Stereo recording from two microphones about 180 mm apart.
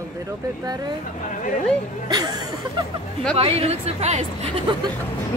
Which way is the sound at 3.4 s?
35° right (ahead or behind).